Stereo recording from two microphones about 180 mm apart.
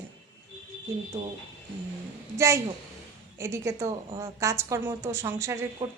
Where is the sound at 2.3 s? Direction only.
15° right (ahead or behind).